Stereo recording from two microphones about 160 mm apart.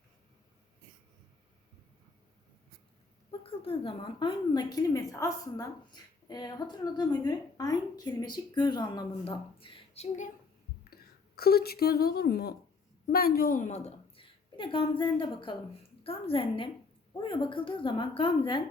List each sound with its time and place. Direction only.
3.4 s a woman's voice: 35° left (ahead or behind)
10.8 s speech: 75° left (ahead or behind)
13.1 s a woman's voice: 70° left (ahead or behind); by 18.6 s 30° left (ahead or behind)